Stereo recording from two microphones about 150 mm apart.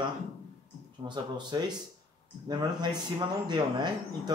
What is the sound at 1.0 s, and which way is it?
A man's voice, 30° right (ahead or behind).